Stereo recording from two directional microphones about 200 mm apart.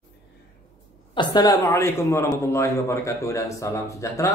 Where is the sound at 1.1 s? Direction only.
20° left (ahead or behind).